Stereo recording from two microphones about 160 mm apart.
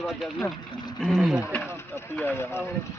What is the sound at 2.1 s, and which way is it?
Speech, 15° left (ahead or behind).